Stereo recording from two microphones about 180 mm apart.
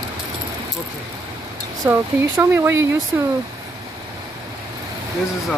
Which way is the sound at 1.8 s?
15° right (ahead or behind).